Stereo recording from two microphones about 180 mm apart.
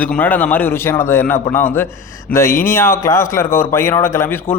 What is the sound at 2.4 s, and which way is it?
Speech, 50° left (ahead or behind).